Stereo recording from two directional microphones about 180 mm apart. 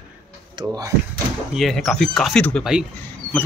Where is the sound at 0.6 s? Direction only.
20° right (ahead or behind).